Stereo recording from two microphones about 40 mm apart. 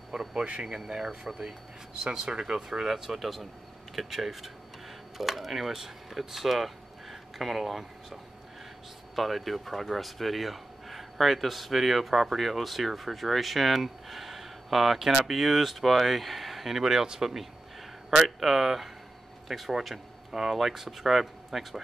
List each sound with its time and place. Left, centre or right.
0.1 s speech: centre
0.7 s speech: centre
2.9 s speech: centre